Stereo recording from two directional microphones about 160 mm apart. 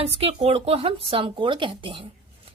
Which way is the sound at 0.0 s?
40° right (ahead or behind).